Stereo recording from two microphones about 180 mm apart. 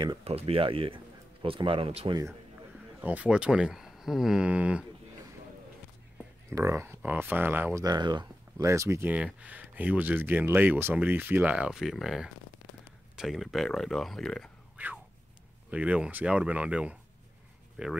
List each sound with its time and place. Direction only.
0.0 s speech: 30° right (ahead or behind)
3.0 s speech: 10° right (ahead or behind)
6.5 s speech: 15° right (ahead or behind)
7.8 s speech: 25° right (ahead or behind); by 14.5 s centre (ahead or behind)
14.8 s a sound: 10° right (ahead or behind)
15.7 s speech: 5° right (ahead or behind)